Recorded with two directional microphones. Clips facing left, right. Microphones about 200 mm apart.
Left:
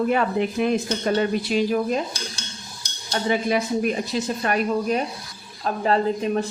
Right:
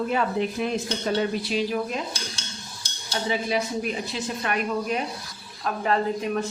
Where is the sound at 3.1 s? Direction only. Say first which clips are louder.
Left 4 dB; 55° left (ahead or behind).